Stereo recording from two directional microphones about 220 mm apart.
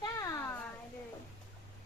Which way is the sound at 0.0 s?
15° left (ahead or behind).